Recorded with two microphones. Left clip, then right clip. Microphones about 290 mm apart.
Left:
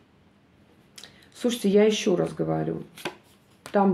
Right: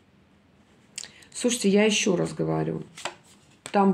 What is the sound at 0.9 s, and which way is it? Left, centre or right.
Speech, right.